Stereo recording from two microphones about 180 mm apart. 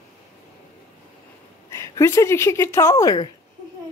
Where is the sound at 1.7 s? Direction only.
15° left (ahead or behind).